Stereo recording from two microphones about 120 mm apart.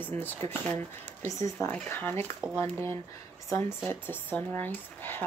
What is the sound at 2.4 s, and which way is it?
Speech, 10° right (ahead or behind).